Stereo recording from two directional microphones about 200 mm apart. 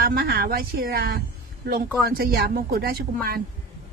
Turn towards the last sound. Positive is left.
turn(degrees=-50)  # may be behind; listen again after turning